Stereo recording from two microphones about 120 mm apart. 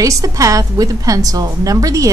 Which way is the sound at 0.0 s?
25° right (ahead or behind).